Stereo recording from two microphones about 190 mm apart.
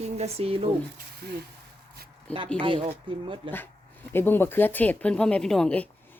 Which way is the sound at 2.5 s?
30° right (ahead or behind).